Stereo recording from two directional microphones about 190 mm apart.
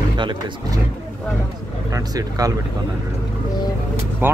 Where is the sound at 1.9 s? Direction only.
20° right (ahead or behind).